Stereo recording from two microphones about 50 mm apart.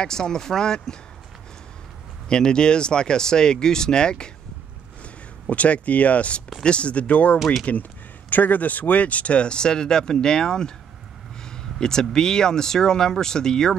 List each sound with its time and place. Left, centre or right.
0.0 s speech: centre
2.2 s speech: centre
5.0 s speech: left